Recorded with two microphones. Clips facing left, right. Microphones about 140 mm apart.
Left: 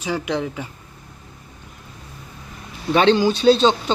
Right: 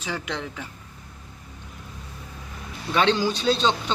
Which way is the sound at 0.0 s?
10° left (ahead or behind).